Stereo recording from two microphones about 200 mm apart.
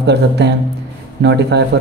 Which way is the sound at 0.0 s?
60° right (ahead or behind).